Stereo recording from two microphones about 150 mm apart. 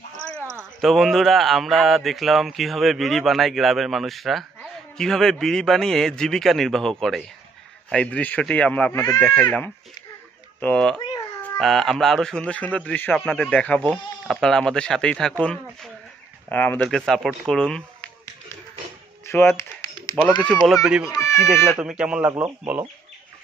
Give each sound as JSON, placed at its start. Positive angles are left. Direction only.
{"t": 0.7, "sound": "speech", "side_deg": 0}
{"t": 19.2, "sound": "a sound", "side_deg": 15}
{"t": 20.6, "sound": "speech", "side_deg": 0}
{"t": 21.1, "sound": "speech", "side_deg": 20}
{"t": 21.7, "sound": "speech", "side_deg": -5}